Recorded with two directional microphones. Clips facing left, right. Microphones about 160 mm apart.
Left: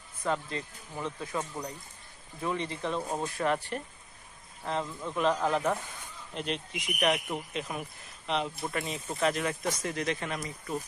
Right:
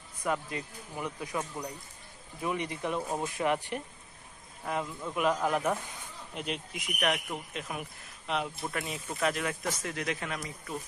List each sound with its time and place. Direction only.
0.2 s speech: 15° right (ahead or behind)
1.4 s speech: 5° left (ahead or behind)
2.4 s speech: 15° right (ahead or behind)
3.0 s speech: 5° right (ahead or behind)
3.3 s speech: 15° right (ahead or behind)